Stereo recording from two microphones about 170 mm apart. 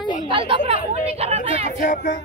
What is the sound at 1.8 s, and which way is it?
Speech, 50° left (ahead or behind).